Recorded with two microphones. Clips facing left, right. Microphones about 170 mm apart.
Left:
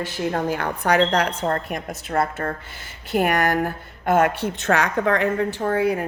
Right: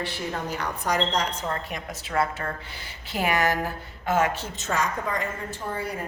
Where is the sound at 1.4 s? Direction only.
55° left (ahead or behind).